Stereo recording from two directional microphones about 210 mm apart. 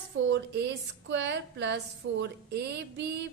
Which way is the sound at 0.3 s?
55° right (ahead or behind).